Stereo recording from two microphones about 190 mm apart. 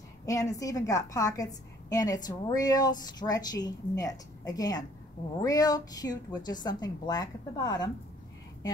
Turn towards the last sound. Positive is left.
turn(degrees=20)  # may be behind; listen again after turning